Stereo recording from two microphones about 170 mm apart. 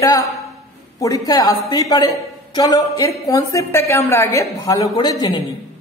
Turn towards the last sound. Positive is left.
turn(degrees=25)  # may be behind; listen again after turning